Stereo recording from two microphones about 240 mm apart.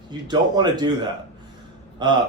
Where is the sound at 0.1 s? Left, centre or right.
Centre.